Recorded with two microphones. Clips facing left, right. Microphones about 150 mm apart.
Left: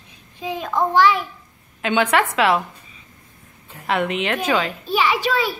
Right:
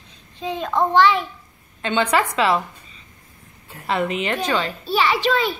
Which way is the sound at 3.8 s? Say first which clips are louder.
Left 1 dB; centre (ahead or behind).